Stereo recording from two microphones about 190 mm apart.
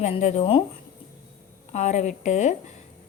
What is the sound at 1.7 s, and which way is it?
Speech, 35° left (ahead or behind).